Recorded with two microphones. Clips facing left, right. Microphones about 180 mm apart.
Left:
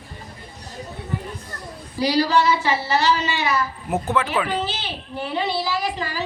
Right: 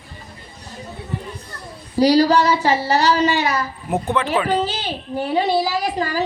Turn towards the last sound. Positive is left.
turn(degrees=-45)  # may be behind; listen again after turning